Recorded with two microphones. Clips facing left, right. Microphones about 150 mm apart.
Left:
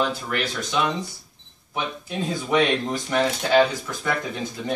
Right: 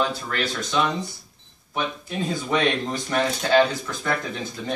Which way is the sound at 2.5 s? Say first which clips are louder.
Left 3 dB; 15° left (ahead or behind).